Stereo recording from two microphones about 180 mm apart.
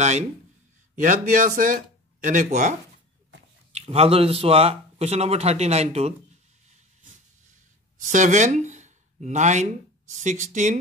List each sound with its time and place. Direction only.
1.0 s speech: 45° right (ahead or behind)
3.7 s speech: 35° right (ahead or behind)
8.0 s speech: 45° right (ahead or behind)